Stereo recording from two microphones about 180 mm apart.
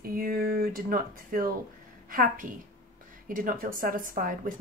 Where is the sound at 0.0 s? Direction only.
55° right (ahead or behind).